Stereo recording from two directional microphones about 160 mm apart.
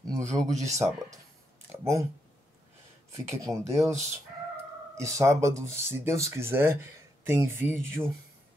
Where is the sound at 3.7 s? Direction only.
20° right (ahead or behind).